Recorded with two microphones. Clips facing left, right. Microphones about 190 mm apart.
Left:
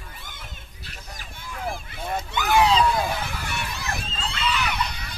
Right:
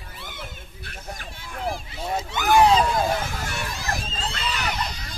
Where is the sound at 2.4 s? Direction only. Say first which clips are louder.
Right 2 dB; 55° right (ahead or behind).